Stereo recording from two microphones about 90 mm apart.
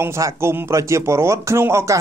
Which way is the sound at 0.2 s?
30° right (ahead or behind).